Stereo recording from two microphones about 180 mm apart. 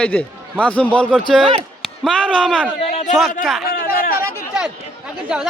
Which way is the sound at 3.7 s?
55° left (ahead or behind).